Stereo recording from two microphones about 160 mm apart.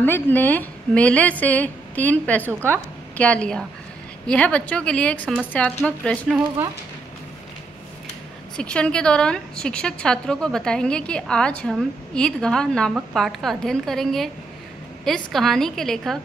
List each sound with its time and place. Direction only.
0.0 s a woman's voice: 10° left (ahead or behind)
8.5 s a woman's voice: 5° left (ahead or behind)